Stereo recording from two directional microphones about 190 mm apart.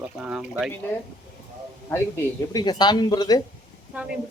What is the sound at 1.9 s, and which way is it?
Speech, 15° left (ahead or behind).